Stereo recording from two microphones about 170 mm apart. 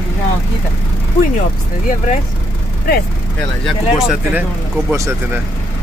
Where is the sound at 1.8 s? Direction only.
45° left (ahead or behind).